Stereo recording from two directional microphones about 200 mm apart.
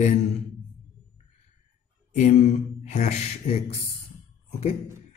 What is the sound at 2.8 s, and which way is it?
Mantra, 35° left (ahead or behind).